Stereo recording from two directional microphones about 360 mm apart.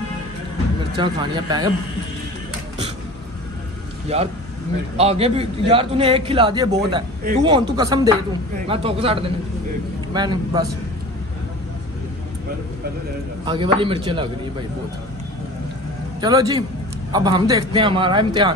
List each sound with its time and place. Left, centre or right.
0.9 s a man's voice: centre
4.1 s a man's voice: centre
13.5 s a man's voice: centre
16.2 s a man's voice: centre